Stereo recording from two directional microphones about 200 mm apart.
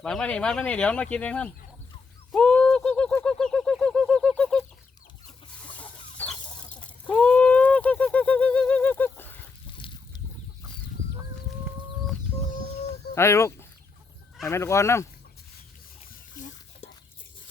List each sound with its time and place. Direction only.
0.0 s speech: 5° left (ahead or behind)
2.3 s a sound: 5° left (ahead or behind)
6.2 s chicken: 10° left (ahead or behind)
6.8 s bird: 5° left (ahead or behind)
9.7 s a sound: 25° left (ahead or behind)
13.1 s speech: 15° left (ahead or behind)
16.3 s whispering: 40° left (ahead or behind)